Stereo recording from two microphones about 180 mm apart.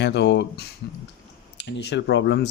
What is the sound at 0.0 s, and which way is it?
Speech, 70° left (ahead or behind).